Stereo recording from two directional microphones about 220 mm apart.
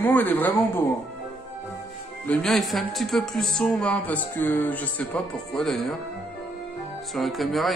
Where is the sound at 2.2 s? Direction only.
5° left (ahead or behind).